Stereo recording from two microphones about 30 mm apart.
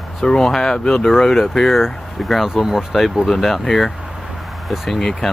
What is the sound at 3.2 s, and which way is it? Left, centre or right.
Speech, centre.